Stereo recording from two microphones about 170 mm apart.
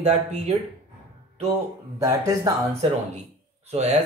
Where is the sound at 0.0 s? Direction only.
40° right (ahead or behind).